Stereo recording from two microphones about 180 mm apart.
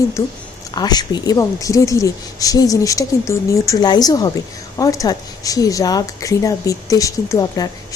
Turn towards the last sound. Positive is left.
turn(degrees=20)  # may be behind; listen again after turning